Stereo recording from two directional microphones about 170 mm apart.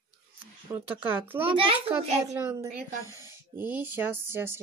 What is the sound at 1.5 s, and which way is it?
Speech, 30° right (ahead or behind).